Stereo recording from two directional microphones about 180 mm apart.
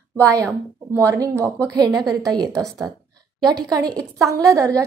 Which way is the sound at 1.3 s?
10° left (ahead or behind).